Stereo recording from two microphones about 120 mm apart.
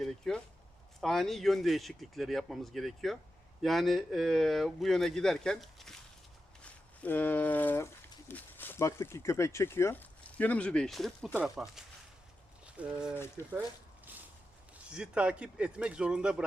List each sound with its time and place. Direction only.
0.0 s speech: 5° left (ahead or behind)
13.1 s speech: 20° left (ahead or behind)
14.8 s speech: 10° right (ahead or behind)